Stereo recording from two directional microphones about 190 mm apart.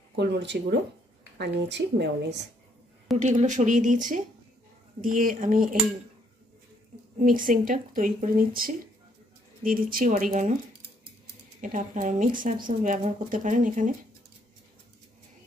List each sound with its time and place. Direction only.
0.1 s a woman's voice: 60° right (ahead or behind)
3.2 s speech: 40° right (ahead or behind)
7.2 s speech: 45° right (ahead or behind)
11.6 s speech: 45° right (ahead or behind)